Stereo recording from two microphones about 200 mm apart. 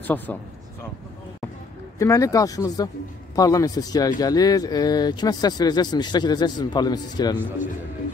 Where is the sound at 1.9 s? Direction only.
15° left (ahead or behind).